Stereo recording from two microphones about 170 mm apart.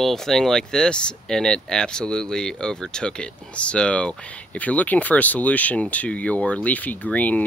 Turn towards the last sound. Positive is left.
turn(degrees=10)  # may be behind; listen again after turning